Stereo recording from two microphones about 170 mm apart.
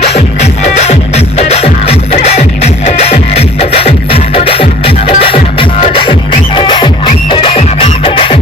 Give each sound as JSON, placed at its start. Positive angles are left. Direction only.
{"t": 0.0, "sound": "music", "side_deg": 40}